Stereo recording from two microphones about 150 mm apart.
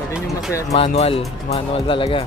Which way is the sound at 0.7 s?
45° left (ahead or behind).